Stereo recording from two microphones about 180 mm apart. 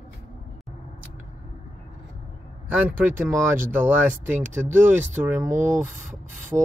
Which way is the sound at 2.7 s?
10° right (ahead or behind).